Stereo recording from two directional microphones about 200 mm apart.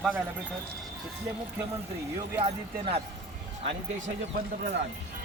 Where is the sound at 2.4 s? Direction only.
30° right (ahead or behind).